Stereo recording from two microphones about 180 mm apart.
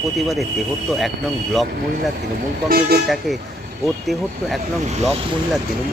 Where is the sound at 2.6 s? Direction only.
55° right (ahead or behind).